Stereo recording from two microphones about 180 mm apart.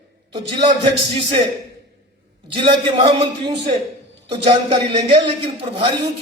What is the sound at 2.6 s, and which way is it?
A man's voice, 25° right (ahead or behind).